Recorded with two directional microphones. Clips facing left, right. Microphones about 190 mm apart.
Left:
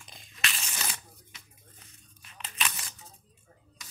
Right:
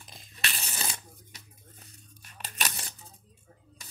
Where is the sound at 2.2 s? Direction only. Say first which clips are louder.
Even; 35° right (ahead or behind).